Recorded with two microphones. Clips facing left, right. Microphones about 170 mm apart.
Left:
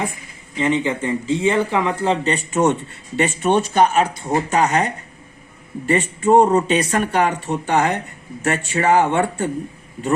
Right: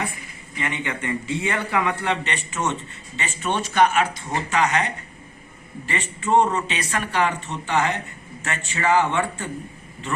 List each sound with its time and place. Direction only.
0.5 s speech: 30° left (ahead or behind)
5.9 s speech: 45° left (ahead or behind)